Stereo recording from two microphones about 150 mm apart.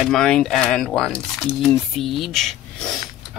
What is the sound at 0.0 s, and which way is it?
Speech, 5° left (ahead or behind).